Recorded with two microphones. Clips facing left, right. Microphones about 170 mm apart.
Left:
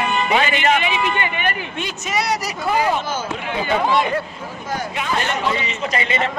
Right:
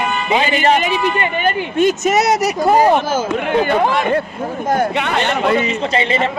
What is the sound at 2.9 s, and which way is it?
Speech, 55° right (ahead or behind).